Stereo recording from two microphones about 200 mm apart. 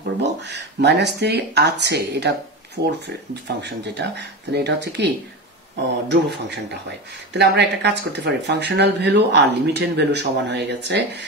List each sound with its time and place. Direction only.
0.2 s speech: 60° right (ahead or behind)